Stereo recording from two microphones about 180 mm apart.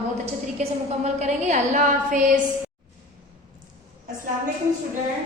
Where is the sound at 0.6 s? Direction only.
40° right (ahead or behind).